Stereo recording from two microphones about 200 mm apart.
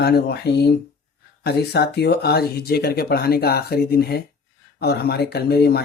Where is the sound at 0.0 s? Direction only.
55° left (ahead or behind).